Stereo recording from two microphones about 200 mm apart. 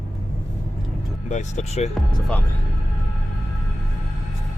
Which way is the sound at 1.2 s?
35° left (ahead or behind).